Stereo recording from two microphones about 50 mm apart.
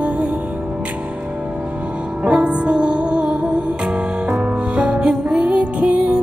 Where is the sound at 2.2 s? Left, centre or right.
Right.